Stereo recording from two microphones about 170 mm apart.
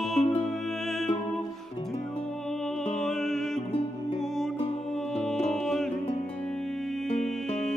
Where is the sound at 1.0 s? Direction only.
30° left (ahead or behind).